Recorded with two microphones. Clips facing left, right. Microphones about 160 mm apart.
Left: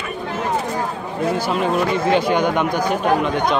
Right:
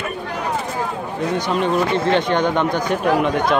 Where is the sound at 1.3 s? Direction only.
5° left (ahead or behind).